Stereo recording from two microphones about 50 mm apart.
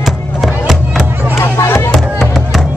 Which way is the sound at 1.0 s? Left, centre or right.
Right.